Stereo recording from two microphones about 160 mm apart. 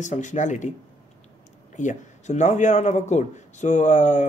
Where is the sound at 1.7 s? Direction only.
50° left (ahead or behind).